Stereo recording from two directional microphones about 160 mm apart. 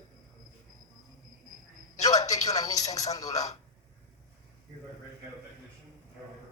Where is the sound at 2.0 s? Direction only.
20° left (ahead or behind).